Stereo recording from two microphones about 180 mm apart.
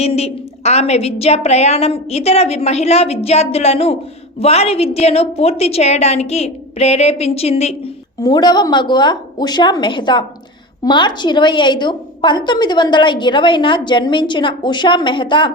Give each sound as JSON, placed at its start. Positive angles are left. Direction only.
{"t": 0.0, "sound": "a woman's voice", "side_deg": 35}
{"t": 8.2, "sound": "a woman's voice", "side_deg": 25}